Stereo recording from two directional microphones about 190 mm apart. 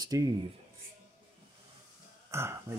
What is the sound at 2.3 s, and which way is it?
Speech, 15° right (ahead or behind).